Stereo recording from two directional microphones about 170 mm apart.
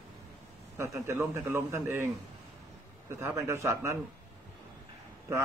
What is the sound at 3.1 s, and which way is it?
Speech, 15° right (ahead or behind).